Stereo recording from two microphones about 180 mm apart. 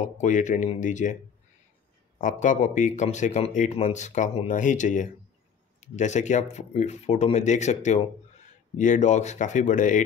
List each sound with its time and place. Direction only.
0.0 s speech: 40° left (ahead or behind)
2.1 s speech: 45° left (ahead or behind)